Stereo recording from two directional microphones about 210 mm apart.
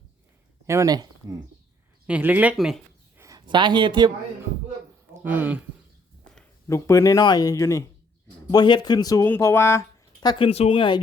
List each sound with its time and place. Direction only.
0.7 s speech: 15° right (ahead or behind)
2.0 s speech: 5° right (ahead or behind)
3.2 s speech: 15° right (ahead or behind)
5.2 s speech: 10° right (ahead or behind)
6.2 s a sound: 5° left (ahead or behind)
6.7 s speech: 15° left (ahead or behind)